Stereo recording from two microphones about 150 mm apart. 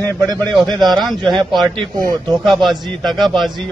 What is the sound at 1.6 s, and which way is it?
Speech, 25° right (ahead or behind).